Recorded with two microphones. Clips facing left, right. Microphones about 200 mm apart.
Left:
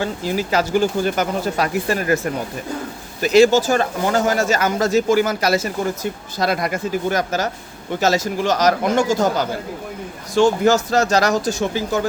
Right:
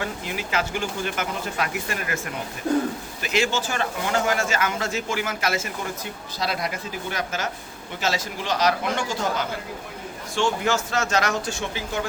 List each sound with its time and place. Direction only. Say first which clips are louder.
0.0 s speech: left 8 dB; 35° left (ahead or behind)